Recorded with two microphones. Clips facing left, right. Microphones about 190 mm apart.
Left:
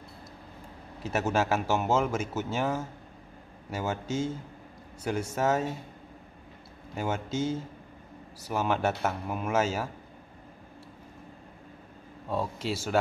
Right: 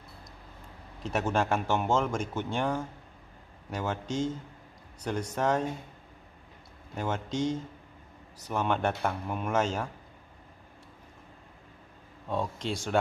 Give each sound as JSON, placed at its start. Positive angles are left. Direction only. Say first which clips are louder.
{"t": 1.0, "sound": "speech", "louder": "left 1 dB", "side_deg": 5}
{"t": 7.0, "sound": "speech", "louder": "even", "side_deg": 5}
{"t": 12.3, "sound": "speech", "louder": "left 1 dB", "side_deg": 5}